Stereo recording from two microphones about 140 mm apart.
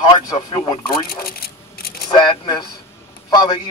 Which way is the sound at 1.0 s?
90° left.